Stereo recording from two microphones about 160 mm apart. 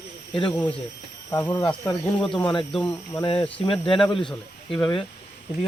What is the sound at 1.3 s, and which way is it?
Speech, 15° left (ahead or behind).